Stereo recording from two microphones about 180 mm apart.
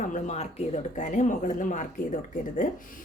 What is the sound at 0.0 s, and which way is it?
A woman's voice, 40° left (ahead or behind).